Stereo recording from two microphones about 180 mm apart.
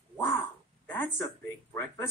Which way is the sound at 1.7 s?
15° left (ahead or behind).